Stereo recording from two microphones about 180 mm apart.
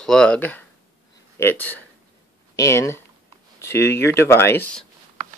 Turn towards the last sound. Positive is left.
turn(degrees=10)  # may be behind; listen again after turning